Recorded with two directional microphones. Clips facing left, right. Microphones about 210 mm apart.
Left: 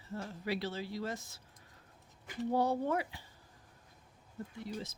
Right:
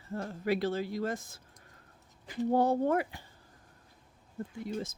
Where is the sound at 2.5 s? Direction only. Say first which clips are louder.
Right 5 dB; 50° right (ahead or behind).